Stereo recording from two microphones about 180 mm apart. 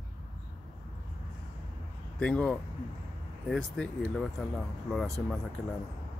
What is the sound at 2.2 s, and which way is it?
Speech, 5° left (ahead or behind).